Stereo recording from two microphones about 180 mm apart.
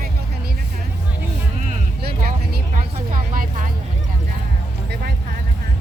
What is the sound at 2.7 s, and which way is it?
Speech, 50° right (ahead or behind).